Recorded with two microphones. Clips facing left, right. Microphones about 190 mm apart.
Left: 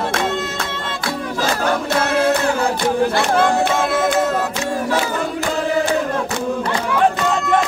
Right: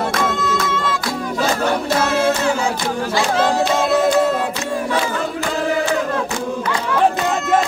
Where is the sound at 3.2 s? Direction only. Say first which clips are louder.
Left 1 dB; 60° left (ahead or behind).